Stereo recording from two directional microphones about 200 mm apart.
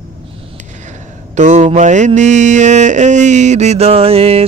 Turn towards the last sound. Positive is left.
turn(degrees=-30)  # may be behind; listen again after turning